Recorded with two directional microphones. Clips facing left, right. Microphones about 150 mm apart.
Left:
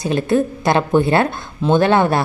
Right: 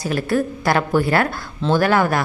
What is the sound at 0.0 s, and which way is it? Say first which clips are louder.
A woman's voice: left 3 dB; 20° left (ahead or behind).